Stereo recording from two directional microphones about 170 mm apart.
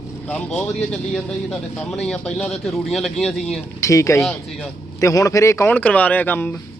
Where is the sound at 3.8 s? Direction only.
20° left (ahead or behind).